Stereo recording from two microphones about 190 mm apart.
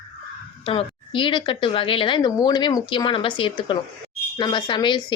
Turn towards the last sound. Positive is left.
turn(degrees=25)  # may be behind; listen again after turning